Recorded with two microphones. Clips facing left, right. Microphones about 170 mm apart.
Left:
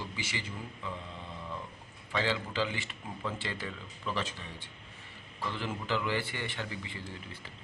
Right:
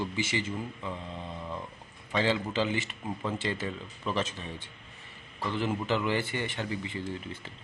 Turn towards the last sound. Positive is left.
turn(degrees=-20)  # may be behind; listen again after turning